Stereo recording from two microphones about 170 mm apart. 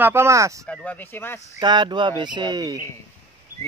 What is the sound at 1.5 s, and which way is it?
Speech, 25° right (ahead or behind).